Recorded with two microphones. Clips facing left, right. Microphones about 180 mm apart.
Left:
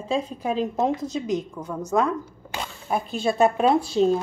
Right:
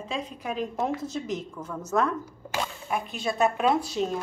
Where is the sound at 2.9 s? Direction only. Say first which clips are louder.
Left 7 dB; 30° left (ahead or behind).